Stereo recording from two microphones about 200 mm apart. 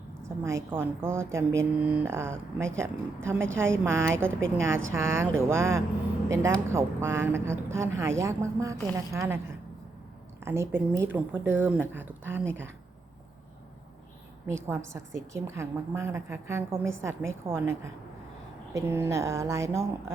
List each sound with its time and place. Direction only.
0.4 s a woman's voice: 15° right (ahead or behind)
4.4 s speech: 75° right (ahead or behind)
4.9 s a woman's voice: 15° right (ahead or behind)
10.4 s a woman's voice: 10° right (ahead or behind)
14.4 s a woman's voice: 10° right (ahead or behind)